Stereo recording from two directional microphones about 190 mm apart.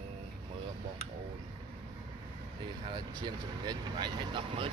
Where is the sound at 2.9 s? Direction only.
25° right (ahead or behind).